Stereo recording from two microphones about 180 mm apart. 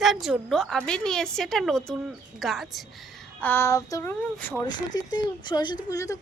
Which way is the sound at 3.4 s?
10° left (ahead or behind).